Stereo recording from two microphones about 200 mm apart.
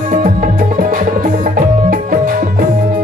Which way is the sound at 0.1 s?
40° right (ahead or behind).